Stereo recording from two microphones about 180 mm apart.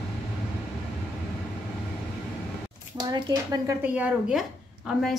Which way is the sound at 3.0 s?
25° right (ahead or behind).